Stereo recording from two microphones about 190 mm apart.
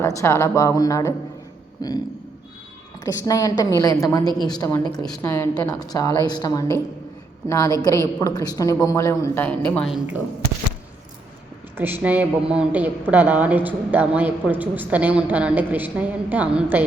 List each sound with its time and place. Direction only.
0.2 s a woman's voice: 15° left (ahead or behind)
3.0 s a woman's voice: 20° left (ahead or behind)
4.2 s a woman's voice: 25° right (ahead or behind)
4.4 s a woman's voice: 20° left (ahead or behind); by 10.2 s centre (ahead or behind)
11.8 s speech: 10° right (ahead or behind)